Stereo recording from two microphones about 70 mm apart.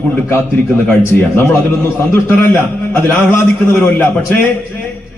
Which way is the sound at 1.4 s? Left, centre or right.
Left.